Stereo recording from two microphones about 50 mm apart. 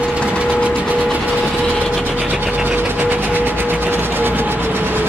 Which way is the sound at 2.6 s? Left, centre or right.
Right.